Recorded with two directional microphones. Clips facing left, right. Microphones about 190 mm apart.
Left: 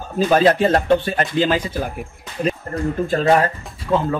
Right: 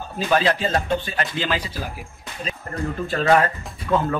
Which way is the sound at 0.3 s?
45° left (ahead or behind).